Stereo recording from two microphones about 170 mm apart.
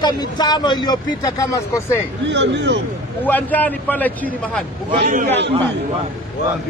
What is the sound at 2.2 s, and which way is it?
Speech, 90° right.